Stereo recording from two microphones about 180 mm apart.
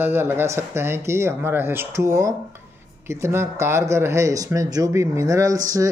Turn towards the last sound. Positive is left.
turn(degrees=-20)  # may be behind; listen again after turning